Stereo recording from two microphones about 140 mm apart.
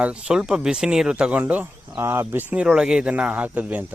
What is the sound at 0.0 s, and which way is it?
Speech, 5° right (ahead or behind).